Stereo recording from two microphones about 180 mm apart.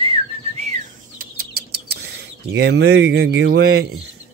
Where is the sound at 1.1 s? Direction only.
60° right (ahead or behind).